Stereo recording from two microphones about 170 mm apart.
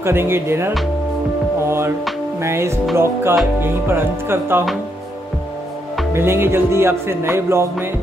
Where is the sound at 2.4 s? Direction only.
15° right (ahead or behind).